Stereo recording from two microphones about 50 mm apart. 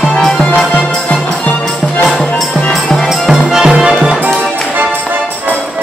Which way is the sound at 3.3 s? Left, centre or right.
Centre.